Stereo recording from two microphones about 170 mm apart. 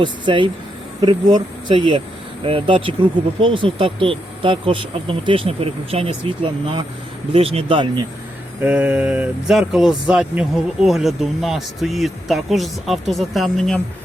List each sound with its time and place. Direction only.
0.0 s speech: 30° right (ahead or behind)
8.6 s speech: 10° right (ahead or behind)